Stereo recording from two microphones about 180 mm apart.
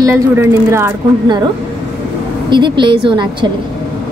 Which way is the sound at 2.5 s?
25° right (ahead or behind).